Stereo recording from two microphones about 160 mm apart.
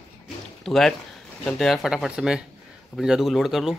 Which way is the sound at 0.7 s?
5° left (ahead or behind).